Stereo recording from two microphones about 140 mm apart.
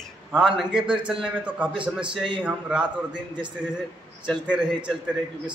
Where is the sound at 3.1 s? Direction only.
35° right (ahead or behind).